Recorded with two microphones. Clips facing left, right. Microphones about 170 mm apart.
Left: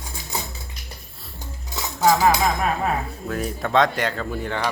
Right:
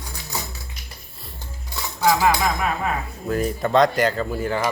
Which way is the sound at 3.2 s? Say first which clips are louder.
Right 7 dB; centre (ahead or behind).